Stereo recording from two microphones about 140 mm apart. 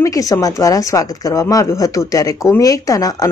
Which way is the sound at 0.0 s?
25° left (ahead or behind).